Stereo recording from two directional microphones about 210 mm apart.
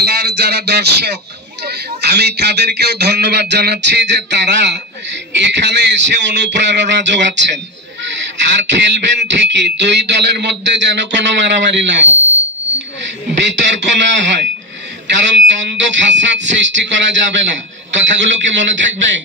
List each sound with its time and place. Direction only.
0.0 s a man's voice: 50° right (ahead or behind)
13.0 s a man's voice: 60° right (ahead or behind)